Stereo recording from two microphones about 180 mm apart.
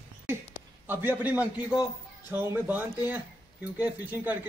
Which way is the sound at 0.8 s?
10° right (ahead or behind).